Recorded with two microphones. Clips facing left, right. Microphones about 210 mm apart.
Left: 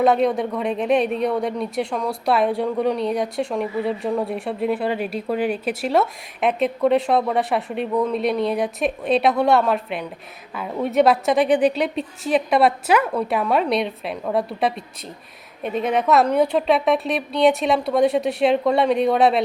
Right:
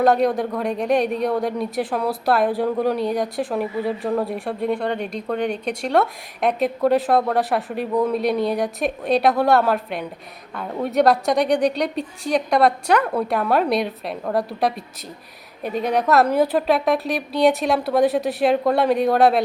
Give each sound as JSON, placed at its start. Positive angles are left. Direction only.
{"t": 0.0, "sound": "speech", "side_deg": 0}